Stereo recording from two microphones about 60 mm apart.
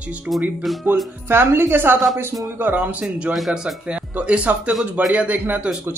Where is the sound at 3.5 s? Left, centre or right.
Centre.